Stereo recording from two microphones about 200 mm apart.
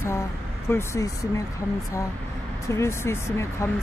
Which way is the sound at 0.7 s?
15° left (ahead or behind).